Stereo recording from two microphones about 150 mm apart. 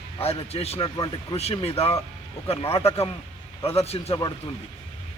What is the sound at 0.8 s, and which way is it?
Speech, 30° left (ahead or behind).